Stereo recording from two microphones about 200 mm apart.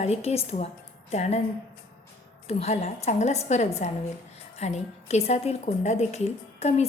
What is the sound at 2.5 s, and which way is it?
A woman's voice, 30° left (ahead or behind).